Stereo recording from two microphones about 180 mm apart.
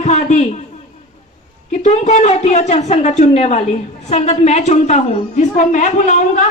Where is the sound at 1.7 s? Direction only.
40° left (ahead or behind).